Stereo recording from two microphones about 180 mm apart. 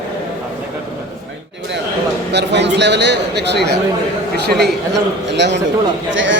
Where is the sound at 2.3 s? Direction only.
70° right (ahead or behind).